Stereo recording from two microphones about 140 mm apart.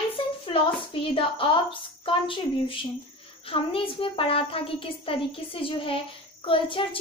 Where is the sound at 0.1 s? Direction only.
40° left (ahead or behind).